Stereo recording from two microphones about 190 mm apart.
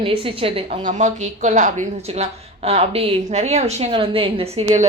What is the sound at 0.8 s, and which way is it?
Speech, 40° right (ahead or behind).